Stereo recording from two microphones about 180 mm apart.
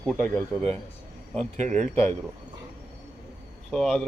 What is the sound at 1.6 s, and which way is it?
Speech, 40° right (ahead or behind).